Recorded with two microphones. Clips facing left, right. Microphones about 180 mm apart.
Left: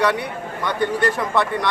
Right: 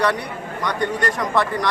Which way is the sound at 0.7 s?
30° left (ahead or behind).